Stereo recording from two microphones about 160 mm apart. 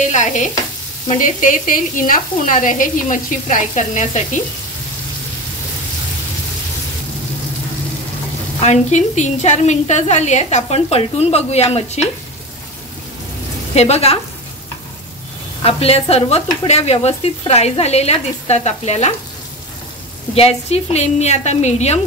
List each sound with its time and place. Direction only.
0.0 s a woman's voice: 50° left (ahead or behind)
8.5 s a woman's voice: 45° left (ahead or behind)
13.7 s stir: 40° left (ahead or behind)
15.6 s stir: 40° left (ahead or behind)
16.6 s a woman's voice: 45° left (ahead or behind)
20.3 s a woman's voice: 40° left (ahead or behind)